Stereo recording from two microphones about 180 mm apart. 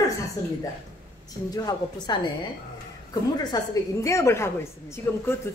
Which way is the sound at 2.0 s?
25° left (ahead or behind).